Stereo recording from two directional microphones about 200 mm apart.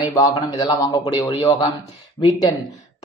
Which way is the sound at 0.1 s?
15° left (ahead or behind).